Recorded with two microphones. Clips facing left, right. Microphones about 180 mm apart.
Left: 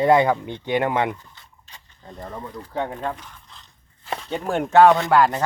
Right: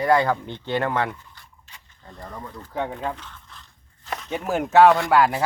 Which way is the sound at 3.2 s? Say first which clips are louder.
Right 1 dB; 10° left (ahead or behind).